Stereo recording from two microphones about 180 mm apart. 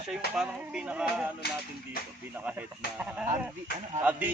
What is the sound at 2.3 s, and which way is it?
Speech, 10° right (ahead or behind).